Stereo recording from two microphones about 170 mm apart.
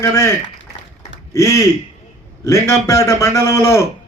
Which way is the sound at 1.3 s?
15° left (ahead or behind).